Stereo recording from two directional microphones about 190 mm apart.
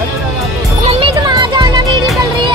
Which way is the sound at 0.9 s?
25° right (ahead or behind).